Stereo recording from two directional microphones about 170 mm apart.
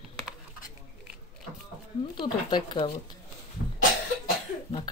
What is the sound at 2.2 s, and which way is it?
Speech, 30° left (ahead or behind).